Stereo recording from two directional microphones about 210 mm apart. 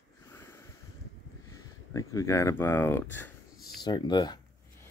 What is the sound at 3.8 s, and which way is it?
Speech, 20° left (ahead or behind).